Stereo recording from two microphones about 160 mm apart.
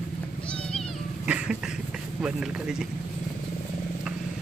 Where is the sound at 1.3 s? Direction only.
5° right (ahead or behind).